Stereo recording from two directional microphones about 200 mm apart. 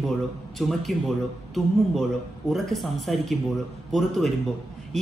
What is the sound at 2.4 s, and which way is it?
Speech, centre (ahead or behind).